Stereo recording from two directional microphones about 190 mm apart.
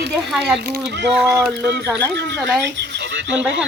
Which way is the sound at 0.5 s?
55° right (ahead or behind).